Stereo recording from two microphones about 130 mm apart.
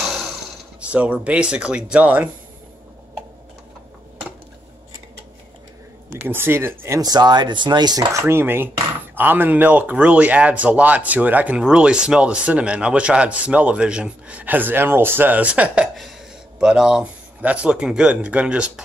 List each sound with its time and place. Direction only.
0.7 s speech: 10° right (ahead or behind)
6.0 s speech: 15° right (ahead or behind)
7.0 s speech: 30° right (ahead or behind); by 18.7 s 10° right (ahead or behind)